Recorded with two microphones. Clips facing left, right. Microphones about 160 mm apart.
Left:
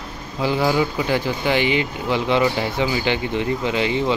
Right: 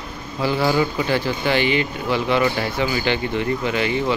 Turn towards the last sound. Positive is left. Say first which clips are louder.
# left 1 dB
turn(degrees=20)  # may be behind; listen again after turning